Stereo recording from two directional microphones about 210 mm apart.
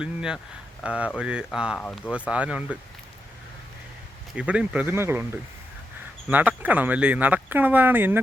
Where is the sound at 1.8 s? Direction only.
10° left (ahead or behind).